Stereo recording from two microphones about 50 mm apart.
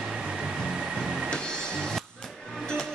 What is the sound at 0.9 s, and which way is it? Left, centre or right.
Printer, centre.